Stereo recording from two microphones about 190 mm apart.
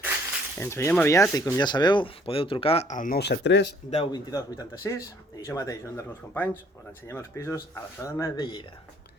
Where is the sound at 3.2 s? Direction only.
65° left (ahead or behind).